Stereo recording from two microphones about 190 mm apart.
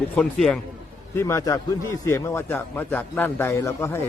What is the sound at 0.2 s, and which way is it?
A man's voice, 5° left (ahead or behind).